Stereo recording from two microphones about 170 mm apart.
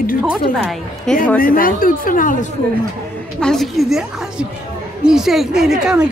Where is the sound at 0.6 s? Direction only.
Centre (ahead or behind).